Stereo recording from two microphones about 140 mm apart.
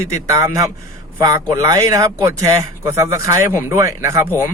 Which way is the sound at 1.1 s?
25° right (ahead or behind).